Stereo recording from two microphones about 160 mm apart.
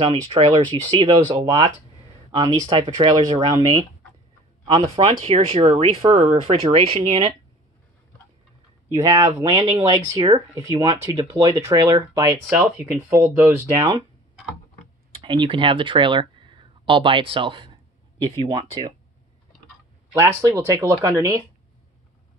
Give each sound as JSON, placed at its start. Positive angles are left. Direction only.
{"t": 0.0, "sound": "speech", "side_deg": -30}
{"t": 9.0, "sound": "speech", "side_deg": -25}
{"t": 12.4, "sound": "speech", "side_deg": -10}
{"t": 15.2, "sound": "speech", "side_deg": -30}
{"t": 20.1, "sound": "speech", "side_deg": -20}